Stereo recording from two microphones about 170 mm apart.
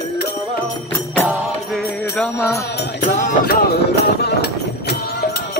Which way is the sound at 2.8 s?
75° left (ahead or behind).